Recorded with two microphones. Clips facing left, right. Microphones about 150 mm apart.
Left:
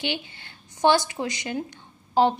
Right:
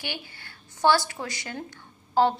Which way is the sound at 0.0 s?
20° left (ahead or behind).